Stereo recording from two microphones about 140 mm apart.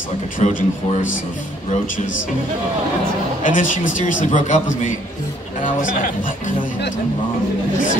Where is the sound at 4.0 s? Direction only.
65° left (ahead or behind).